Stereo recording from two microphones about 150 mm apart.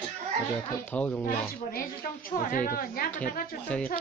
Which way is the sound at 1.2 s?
70° left (ahead or behind).